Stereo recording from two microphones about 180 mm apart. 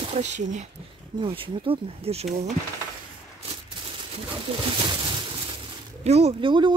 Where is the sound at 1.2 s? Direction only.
30° right (ahead or behind).